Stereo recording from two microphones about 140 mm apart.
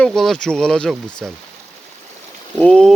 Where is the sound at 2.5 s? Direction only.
5° left (ahead or behind).